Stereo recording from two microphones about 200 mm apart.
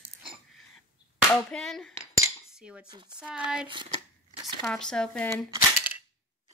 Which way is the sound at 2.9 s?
20° right (ahead or behind).